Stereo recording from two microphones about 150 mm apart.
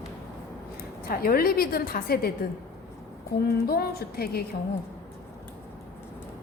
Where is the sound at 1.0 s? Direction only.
80° left.